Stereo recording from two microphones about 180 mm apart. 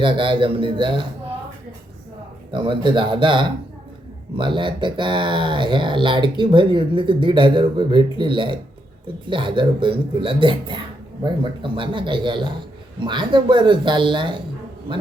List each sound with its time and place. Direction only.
0.0 s speech: 30° right (ahead or behind)
2.5 s speech: 30° right (ahead or behind)